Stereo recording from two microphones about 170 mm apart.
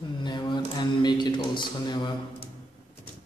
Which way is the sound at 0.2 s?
25° left (ahead or behind).